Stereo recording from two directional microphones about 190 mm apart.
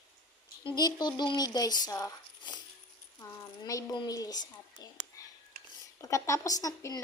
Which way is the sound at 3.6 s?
20° left (ahead or behind).